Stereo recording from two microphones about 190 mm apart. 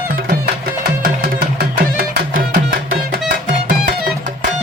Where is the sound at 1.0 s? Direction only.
55° right (ahead or behind).